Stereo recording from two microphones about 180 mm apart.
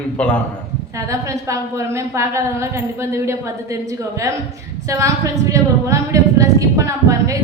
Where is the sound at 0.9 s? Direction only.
15° right (ahead or behind).